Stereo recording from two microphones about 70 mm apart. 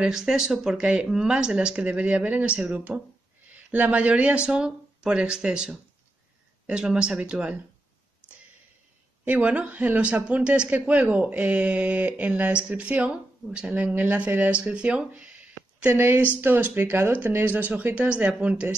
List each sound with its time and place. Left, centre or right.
0.0 s speech: centre
9.2 s speech: right
16.0 s speech: right